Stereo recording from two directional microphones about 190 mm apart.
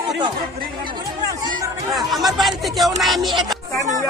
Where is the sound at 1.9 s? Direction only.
Centre (ahead or behind).